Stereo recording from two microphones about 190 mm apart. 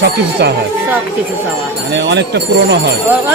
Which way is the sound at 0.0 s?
60° right (ahead or behind).